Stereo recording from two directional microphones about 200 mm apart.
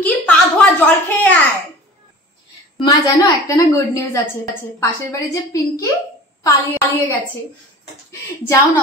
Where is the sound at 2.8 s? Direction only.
20° left (ahead or behind).